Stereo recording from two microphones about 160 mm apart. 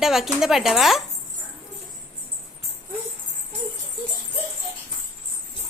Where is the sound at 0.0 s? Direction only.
Centre (ahead or behind).